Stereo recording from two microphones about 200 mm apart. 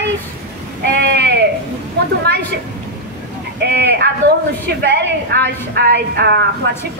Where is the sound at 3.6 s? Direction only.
55° right (ahead or behind).